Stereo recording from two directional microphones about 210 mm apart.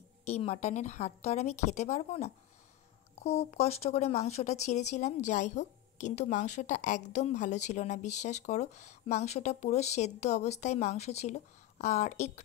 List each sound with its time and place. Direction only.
0.2 s speech: 30° left (ahead or behind)